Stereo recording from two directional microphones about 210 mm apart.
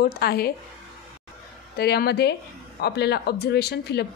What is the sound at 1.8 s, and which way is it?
A woman's voice, 50° left (ahead or behind).